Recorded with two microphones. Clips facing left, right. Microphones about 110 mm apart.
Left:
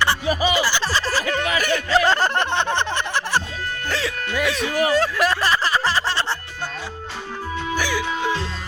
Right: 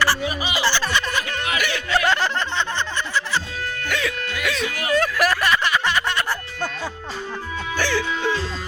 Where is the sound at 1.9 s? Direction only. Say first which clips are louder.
Left 2 dB; 40° left (ahead or behind); by 3.4 s 60° left (ahead or behind).